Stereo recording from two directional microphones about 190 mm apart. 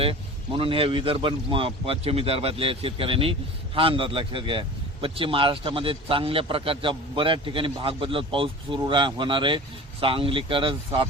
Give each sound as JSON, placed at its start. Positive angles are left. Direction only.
{"t": 0.0, "sound": "speech", "side_deg": -30}